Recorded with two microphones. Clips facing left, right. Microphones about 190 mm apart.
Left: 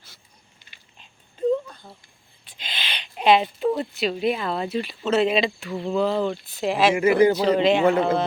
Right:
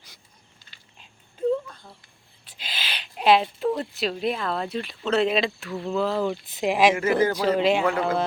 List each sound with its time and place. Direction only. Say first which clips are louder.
2.4 s speech: left 1 dB; 5° right (ahead or behind)
6.5 s speech: right 1 dB; 15° right (ahead or behind)
6.9 s speech: left 5 dB; 15° left (ahead or behind)
7.4 s a man's voice: left 2 dB; 5° right (ahead or behind)
7.9 s speech: left 5 dB; 25° left (ahead or behind)